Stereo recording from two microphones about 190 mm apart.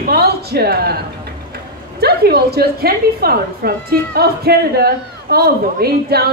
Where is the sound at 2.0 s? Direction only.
55° right (ahead or behind).